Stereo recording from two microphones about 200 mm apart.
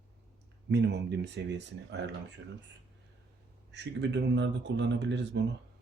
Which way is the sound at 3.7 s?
60° right (ahead or behind).